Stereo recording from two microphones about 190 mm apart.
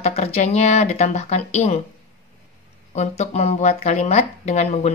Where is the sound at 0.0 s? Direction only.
35° left (ahead or behind).